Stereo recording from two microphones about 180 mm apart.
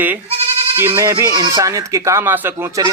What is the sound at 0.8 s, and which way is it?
Speech, 15° right (ahead or behind).